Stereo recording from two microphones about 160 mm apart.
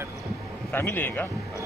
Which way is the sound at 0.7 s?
10° left (ahead or behind).